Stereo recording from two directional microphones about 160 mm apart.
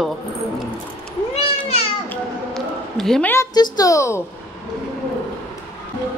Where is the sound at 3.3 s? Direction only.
20° left (ahead or behind).